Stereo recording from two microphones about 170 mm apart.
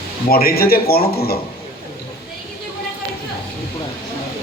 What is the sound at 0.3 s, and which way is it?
A man's voice, 60° left (ahead or behind).